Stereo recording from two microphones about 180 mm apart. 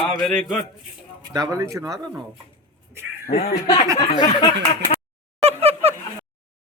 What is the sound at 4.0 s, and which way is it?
Speech, 25° left (ahead or behind).